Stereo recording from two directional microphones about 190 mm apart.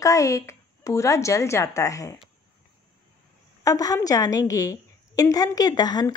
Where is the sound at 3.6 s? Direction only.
20° left (ahead or behind).